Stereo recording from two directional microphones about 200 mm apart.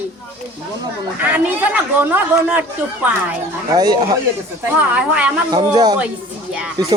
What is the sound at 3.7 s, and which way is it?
Speech, 20° right (ahead or behind).